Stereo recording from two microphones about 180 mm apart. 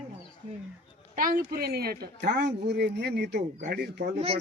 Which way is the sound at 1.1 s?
50° right (ahead or behind).